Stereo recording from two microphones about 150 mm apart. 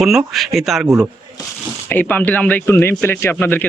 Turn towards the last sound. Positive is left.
turn(degrees=15)  # may be behind; listen again after turning